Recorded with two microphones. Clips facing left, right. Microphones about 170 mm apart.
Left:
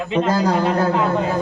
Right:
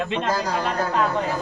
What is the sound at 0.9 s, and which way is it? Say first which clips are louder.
Speech: left 3 dB; 20° left (ahead or behind).